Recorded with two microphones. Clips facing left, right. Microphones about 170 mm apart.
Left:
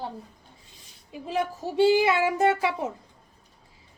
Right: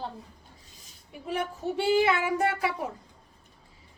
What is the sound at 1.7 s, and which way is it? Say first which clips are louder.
A woman's voice: left 4 dB; 25° left (ahead or behind).